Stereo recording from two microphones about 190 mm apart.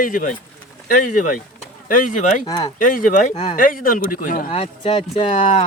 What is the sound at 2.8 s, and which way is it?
Speech, 45° left (ahead or behind).